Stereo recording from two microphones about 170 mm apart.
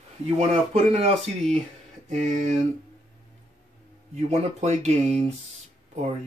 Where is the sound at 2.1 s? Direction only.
45° right (ahead or behind).